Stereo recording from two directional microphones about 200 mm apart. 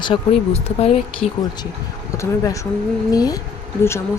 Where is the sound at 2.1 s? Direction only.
15° left (ahead or behind).